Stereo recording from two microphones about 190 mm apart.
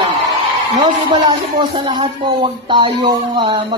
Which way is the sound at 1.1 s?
25° right (ahead or behind).